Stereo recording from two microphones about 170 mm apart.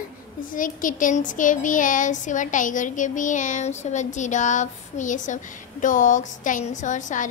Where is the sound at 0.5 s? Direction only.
50° left (ahead or behind).